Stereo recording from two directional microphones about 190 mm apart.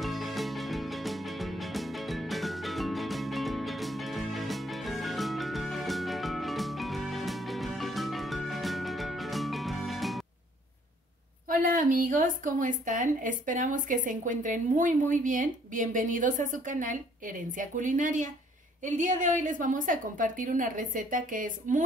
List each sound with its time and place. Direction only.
0.0 s music: centre (ahead or behind)
11.4 s a woman's voice: 45° right (ahead or behind)